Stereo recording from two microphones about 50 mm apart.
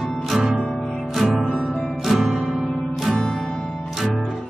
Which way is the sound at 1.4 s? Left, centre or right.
Centre.